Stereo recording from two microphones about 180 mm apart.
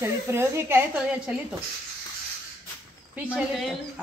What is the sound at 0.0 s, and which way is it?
Speech, 15° right (ahead or behind).